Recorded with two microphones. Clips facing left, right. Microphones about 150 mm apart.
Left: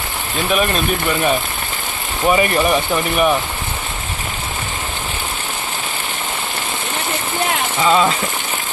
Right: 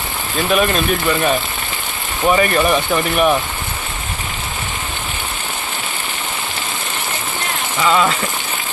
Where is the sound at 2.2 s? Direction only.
10° left (ahead or behind).